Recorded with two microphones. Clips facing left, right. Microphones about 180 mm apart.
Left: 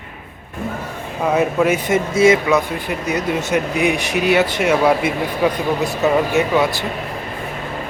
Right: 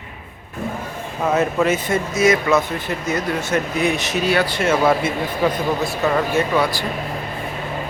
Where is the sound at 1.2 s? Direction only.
10° left (ahead or behind).